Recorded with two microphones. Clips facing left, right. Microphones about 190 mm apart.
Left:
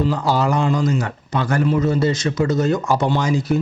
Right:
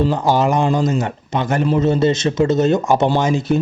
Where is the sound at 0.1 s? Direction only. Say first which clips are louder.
Right 3 dB; 20° right (ahead or behind).